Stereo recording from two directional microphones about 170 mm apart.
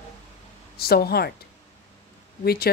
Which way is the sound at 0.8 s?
65° left (ahead or behind).